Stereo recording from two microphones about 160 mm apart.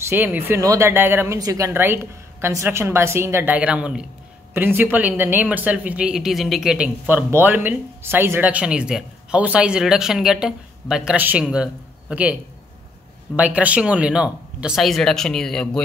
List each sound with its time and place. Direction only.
0.0 s speech: 15° right (ahead or behind)
13.4 s speech: 10° right (ahead or behind)